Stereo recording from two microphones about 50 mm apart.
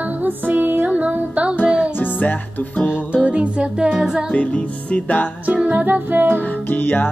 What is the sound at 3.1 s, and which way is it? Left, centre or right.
Music, right.